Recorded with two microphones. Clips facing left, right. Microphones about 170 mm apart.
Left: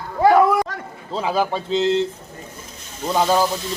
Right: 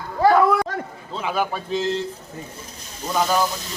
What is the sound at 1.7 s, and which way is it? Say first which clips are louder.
Speech: left 6 dB; 20° left (ahead or behind).